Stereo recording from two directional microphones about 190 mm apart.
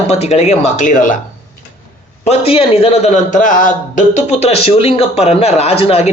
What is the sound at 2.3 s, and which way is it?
A man's voice, 30° left (ahead or behind).